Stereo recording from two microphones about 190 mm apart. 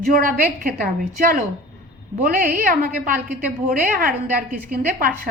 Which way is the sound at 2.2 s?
45° right (ahead or behind).